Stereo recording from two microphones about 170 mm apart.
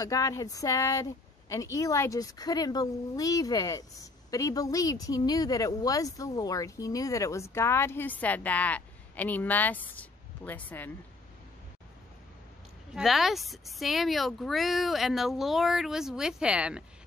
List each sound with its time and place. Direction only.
0.0 s speech: 20° left (ahead or behind)
12.9 s speech: centre (ahead or behind)